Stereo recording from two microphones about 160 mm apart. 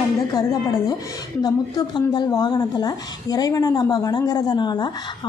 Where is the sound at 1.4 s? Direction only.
25° left (ahead or behind).